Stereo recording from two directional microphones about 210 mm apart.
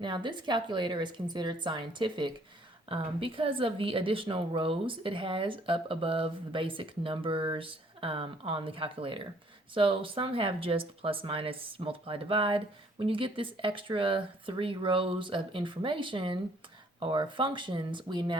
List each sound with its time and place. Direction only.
0.0 s speech: 20° right (ahead or behind)